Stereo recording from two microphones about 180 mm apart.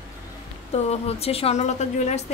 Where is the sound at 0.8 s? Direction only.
35° left (ahead or behind).